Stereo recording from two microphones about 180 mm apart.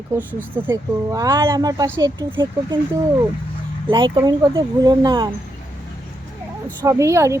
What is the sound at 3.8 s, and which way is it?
Speech, 25° right (ahead or behind).